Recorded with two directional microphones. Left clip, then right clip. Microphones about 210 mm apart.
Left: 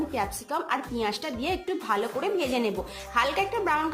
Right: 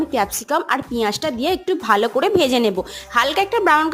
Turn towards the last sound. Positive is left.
turn(degrees=-35)  # may be behind; listen again after turning